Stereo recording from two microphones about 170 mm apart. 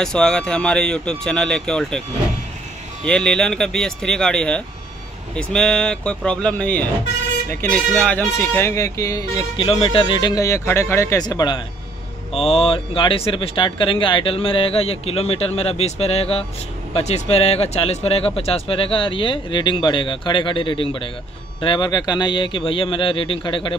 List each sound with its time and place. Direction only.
0.0 s speech: 5° left (ahead or behind)
3.1 s speech: 5° left (ahead or behind)
9.6 s speech: 30° left (ahead or behind)